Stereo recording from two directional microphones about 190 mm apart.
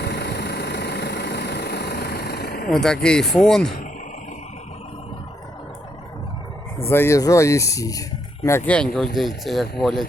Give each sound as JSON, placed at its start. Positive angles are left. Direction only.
{"t": 0.0, "sound": "vehicle", "side_deg": 60}
{"t": 2.6, "sound": "speech", "side_deg": 5}
{"t": 6.7, "sound": "speech", "side_deg": 15}